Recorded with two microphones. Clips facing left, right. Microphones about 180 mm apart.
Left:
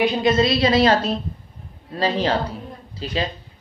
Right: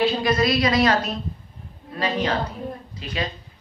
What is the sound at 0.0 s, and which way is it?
A woman's voice, 25° left (ahead or behind).